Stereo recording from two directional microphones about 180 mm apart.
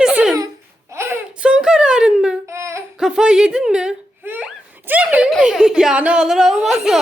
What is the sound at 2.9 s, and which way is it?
A woman's voice, 5° right (ahead or behind).